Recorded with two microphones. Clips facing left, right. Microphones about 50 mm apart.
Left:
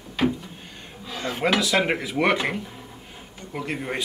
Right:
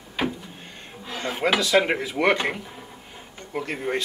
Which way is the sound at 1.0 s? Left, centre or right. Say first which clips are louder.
Even; centre.